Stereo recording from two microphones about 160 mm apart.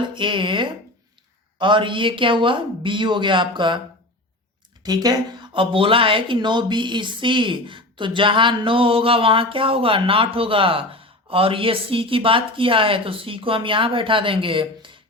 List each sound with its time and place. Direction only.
0.1 s speech: 30° right (ahead or behind)
4.8 s speech: 25° right (ahead or behind)